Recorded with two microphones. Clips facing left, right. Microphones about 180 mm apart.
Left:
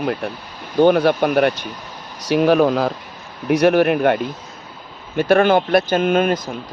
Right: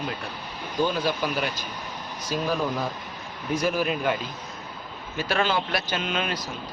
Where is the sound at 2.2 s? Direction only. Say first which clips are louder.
Left 12 dB; 75° left (ahead or behind).